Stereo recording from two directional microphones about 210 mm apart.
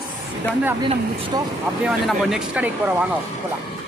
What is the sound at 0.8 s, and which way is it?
Speech, 20° right (ahead or behind).